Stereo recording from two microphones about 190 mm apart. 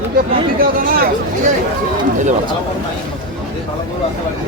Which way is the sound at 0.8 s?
50° right (ahead or behind).